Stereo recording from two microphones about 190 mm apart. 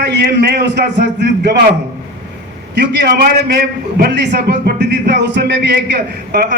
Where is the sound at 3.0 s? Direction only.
55° right (ahead or behind).